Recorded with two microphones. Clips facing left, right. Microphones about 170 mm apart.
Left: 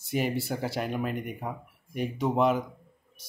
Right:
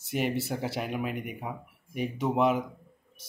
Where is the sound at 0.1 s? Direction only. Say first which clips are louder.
Left 1 dB; centre (ahead or behind).